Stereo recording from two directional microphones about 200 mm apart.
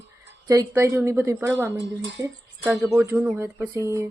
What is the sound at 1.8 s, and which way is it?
Speech, 65° right (ahead or behind).